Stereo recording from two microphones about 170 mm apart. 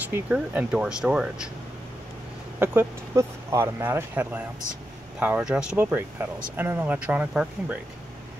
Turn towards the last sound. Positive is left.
turn(degrees=-10)  # may be behind; listen again after turning